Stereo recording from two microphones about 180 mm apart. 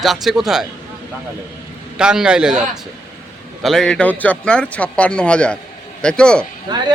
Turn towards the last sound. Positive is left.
turn(degrees=-25)  # may be behind; listen again after turning